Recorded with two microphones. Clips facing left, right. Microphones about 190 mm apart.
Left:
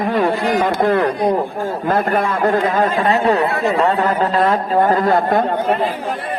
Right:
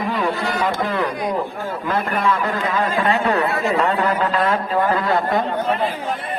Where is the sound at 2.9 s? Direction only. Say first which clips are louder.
Left 3 dB; 35° left (ahead or behind).